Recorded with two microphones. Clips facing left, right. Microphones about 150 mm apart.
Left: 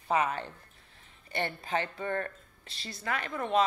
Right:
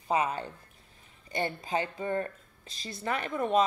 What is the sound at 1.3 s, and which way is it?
Speech, 15° right (ahead or behind).